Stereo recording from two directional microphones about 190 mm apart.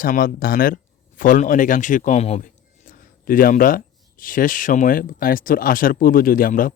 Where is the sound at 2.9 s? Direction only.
45° left (ahead or behind).